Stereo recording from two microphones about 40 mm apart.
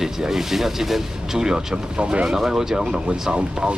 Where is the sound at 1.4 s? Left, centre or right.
Right.